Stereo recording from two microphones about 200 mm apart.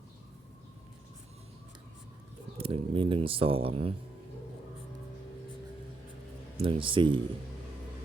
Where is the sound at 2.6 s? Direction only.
30° right (ahead or behind).